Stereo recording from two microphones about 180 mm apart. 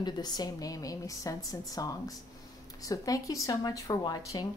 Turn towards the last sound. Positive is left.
turn(degrees=20)  # may be behind; listen again after turning